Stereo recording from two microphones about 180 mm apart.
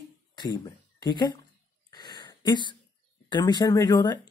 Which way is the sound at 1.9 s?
25° left (ahead or behind).